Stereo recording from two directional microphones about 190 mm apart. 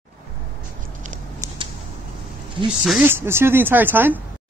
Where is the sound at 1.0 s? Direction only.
40° right (ahead or behind).